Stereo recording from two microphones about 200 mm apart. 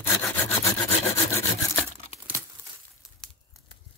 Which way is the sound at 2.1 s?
30° left (ahead or behind).